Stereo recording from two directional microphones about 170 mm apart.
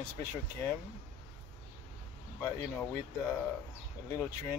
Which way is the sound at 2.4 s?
15° left (ahead or behind).